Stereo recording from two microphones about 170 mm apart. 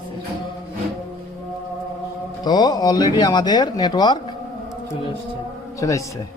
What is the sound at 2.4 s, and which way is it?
Speech, 25° left (ahead or behind).